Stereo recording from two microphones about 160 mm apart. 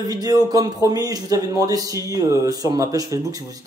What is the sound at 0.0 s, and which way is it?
Speech, 25° right (ahead or behind).